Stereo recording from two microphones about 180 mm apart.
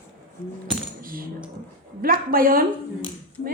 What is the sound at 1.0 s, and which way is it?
Speech, 50° right (ahead or behind).